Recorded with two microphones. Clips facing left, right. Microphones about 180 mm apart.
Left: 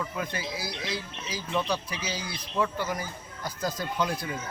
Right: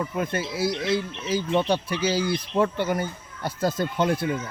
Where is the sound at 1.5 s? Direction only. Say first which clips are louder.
Right 5 dB; 30° right (ahead or behind).